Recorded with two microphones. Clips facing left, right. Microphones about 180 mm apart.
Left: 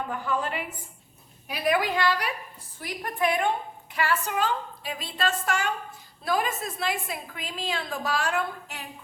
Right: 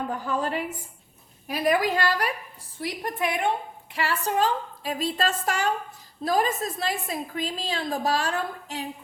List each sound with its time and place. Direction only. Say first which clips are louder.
0.1 s a woman's voice: right 2 dB; 40° right (ahead or behind)
2.8 s a woman's voice: left 1 dB; 25° right (ahead or behind)